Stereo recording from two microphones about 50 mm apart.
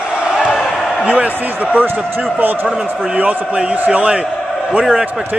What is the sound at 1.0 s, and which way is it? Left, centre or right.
Basketball bounce, right.